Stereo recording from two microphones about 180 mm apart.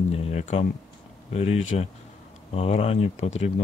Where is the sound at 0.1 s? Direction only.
35° left (ahead or behind).